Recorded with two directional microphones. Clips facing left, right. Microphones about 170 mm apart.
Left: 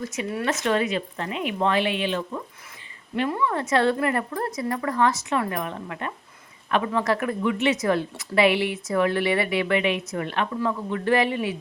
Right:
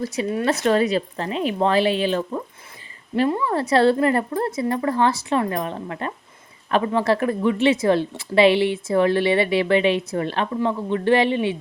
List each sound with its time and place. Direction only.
0.0 s a woman's voice: 35° right (ahead or behind)